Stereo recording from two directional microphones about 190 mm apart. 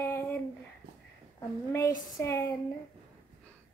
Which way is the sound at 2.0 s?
15° left (ahead or behind).